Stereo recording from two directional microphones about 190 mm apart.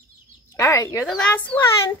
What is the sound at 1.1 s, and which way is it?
Speech, 5° left (ahead or behind).